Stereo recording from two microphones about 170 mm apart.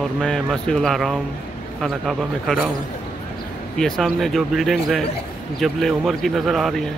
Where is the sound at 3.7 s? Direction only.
5° left (ahead or behind).